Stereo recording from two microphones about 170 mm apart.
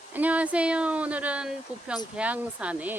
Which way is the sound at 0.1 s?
10° right (ahead or behind).